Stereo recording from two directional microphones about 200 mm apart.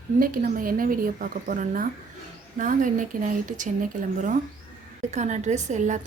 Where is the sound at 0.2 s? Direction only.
45° right (ahead or behind).